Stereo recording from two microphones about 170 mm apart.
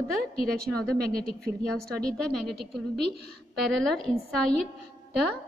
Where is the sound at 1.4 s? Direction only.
5° left (ahead or behind).